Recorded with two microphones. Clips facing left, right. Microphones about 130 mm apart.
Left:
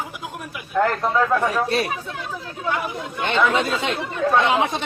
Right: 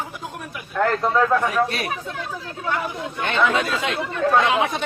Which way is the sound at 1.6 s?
30° left (ahead or behind).